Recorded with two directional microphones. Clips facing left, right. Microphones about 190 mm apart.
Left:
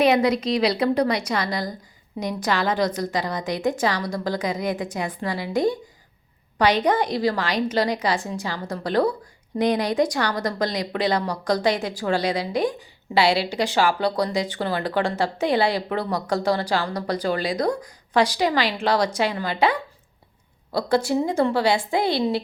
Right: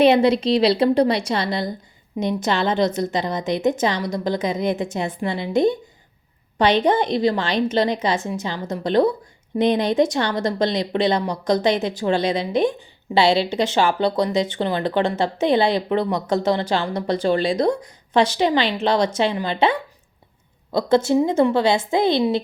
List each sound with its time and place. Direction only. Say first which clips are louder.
0.0 s speech: right 4 dB; 30° right (ahead or behind)
20.7 s speech: right 4 dB; 25° right (ahead or behind)